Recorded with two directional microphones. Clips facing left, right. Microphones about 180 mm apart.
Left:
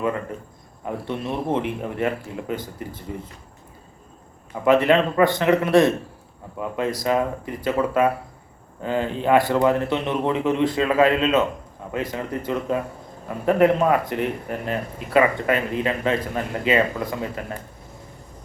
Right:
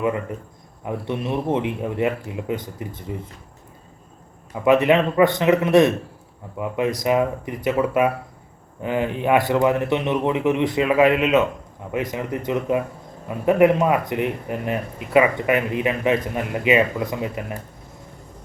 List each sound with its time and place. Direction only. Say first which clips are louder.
0.9 s speech: right 2 dB; 20° right (ahead or behind)
4.6 s a man's voice: right 1 dB; 20° right (ahead or behind)